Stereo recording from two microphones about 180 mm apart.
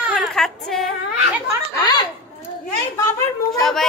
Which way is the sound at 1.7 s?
20° left (ahead or behind).